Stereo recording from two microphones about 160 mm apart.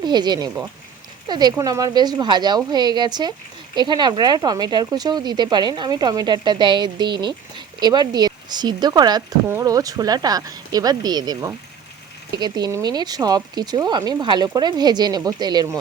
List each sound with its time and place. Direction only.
0.0 s speech: 25° right (ahead or behind)